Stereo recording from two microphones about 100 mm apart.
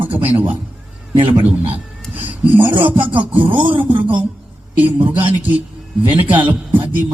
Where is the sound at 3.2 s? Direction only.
15° right (ahead or behind).